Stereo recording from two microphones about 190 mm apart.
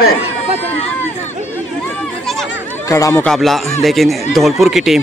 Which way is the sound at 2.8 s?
15° left (ahead or behind).